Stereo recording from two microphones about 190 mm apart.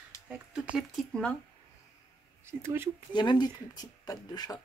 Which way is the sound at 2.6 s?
15° right (ahead or behind).